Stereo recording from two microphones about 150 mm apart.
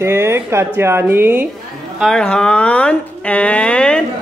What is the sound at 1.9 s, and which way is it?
Speech, 5° left (ahead or behind).